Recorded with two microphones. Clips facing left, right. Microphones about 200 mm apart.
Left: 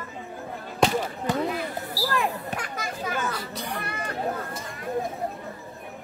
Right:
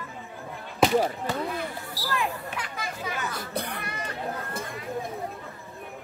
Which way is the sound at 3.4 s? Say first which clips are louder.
Right 1 dB; 55° right (ahead or behind).